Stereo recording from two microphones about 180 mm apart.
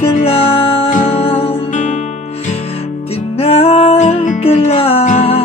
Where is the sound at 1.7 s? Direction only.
45° left (ahead or behind).